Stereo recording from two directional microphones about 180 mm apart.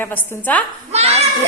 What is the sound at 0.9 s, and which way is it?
Children playing, 35° right (ahead or behind).